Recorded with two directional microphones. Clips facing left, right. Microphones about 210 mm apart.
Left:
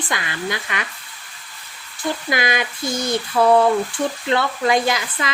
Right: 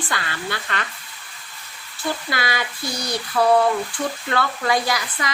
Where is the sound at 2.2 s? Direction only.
20° left (ahead or behind).